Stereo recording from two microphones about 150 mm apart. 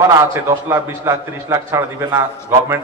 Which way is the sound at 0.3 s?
15° right (ahead or behind).